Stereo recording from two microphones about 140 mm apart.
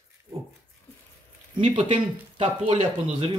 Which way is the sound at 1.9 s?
45° right (ahead or behind).